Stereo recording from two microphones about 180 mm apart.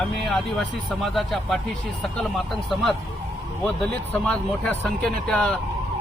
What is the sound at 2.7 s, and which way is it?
Speech, centre (ahead or behind).